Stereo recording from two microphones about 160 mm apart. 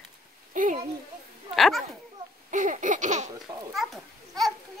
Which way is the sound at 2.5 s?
55° right (ahead or behind).